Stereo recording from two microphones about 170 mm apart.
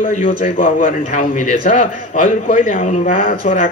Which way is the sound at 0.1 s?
50° left (ahead or behind).